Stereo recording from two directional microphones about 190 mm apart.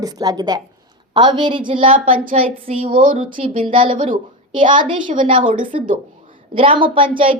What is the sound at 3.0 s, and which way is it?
Speech, 45° right (ahead or behind).